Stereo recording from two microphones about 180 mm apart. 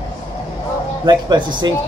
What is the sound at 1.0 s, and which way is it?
Speech, 25° right (ahead or behind).